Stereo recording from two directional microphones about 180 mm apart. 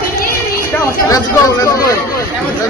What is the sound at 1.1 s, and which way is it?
Speech, 15° left (ahead or behind).